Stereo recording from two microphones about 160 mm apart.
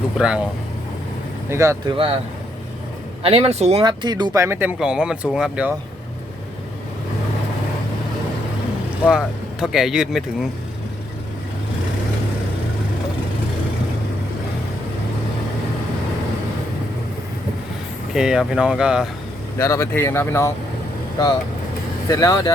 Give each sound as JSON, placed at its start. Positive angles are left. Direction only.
{"t": 0.2, "sound": "speech", "side_deg": -5}
{"t": 1.5, "sound": "speech", "side_deg": -20}
{"t": 1.9, "sound": "speech", "side_deg": -30}
{"t": 3.2, "sound": "speech", "side_deg": -40}
{"t": 3.8, "sound": "speech", "side_deg": -30}
{"t": 9.0, "sound": "speech", "side_deg": -5}
{"t": 18.1, "sound": "speech", "side_deg": -5}
{"t": 19.5, "sound": "speech", "side_deg": 20}
{"t": 22.1, "sound": "speech", "side_deg": 20}